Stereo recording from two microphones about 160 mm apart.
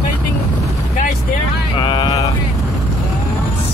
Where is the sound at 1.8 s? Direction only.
30° left (ahead or behind).